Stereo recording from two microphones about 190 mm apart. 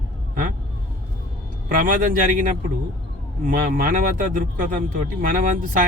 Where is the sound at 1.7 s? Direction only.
45° right (ahead or behind).